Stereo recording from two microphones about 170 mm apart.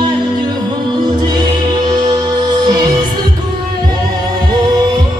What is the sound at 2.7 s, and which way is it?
Music, 25° right (ahead or behind).